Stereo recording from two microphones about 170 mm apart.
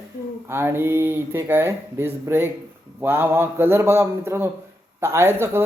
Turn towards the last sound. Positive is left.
turn(degrees=-15)  # may be behind; listen again after turning